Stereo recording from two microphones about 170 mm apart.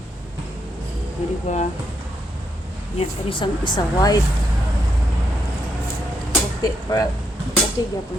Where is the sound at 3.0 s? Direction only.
30° left (ahead or behind).